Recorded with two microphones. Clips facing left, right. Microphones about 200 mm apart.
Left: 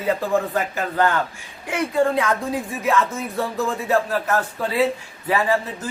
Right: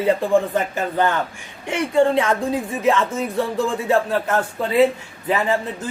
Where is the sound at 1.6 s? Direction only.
25° right (ahead or behind).